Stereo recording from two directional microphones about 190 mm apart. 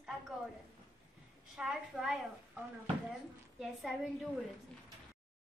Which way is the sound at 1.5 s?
Centre (ahead or behind).